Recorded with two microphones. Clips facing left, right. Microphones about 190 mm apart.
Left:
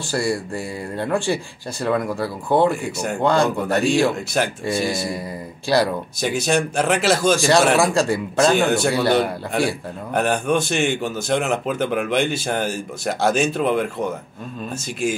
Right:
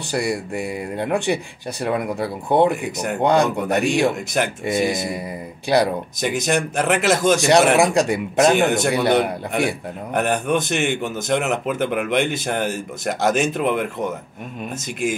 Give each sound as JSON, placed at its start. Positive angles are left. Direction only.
{"t": 0.1, "sound": "speech", "side_deg": -20}